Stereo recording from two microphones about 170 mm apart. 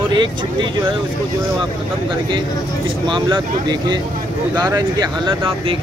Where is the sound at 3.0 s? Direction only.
25° right (ahead or behind).